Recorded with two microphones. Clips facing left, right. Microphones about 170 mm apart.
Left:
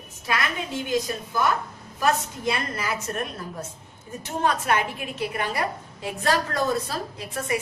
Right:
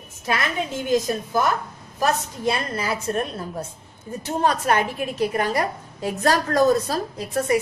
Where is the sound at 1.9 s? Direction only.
35° right (ahead or behind).